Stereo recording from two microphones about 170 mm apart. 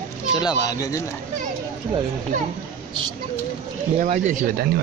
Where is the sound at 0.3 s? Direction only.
25° left (ahead or behind).